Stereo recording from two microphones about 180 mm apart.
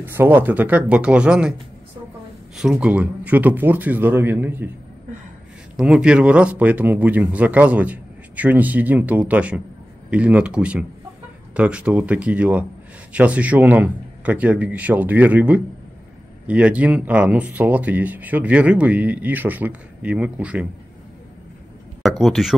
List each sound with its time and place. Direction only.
0.0 s speech: 10° right (ahead or behind)
2.5 s speech: 5° right (ahead or behind)
5.8 s speech: 5° right (ahead or behind)
22.2 s speech: centre (ahead or behind)